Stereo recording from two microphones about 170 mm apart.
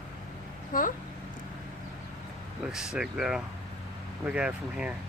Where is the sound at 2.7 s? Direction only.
5° right (ahead or behind).